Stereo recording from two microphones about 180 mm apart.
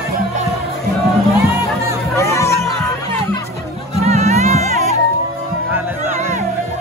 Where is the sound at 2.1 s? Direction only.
15° left (ahead or behind).